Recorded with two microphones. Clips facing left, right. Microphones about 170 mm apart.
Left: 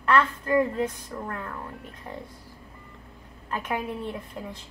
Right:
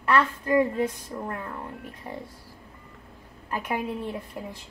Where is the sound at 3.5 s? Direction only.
10° right (ahead or behind).